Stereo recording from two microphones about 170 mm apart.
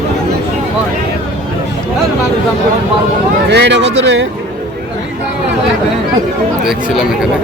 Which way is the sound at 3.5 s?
85° right.